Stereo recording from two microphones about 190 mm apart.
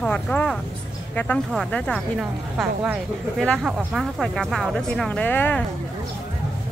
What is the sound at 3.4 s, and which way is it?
Speech, centre (ahead or behind).